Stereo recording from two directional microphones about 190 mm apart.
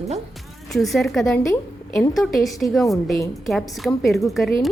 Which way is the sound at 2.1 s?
Centre (ahead or behind).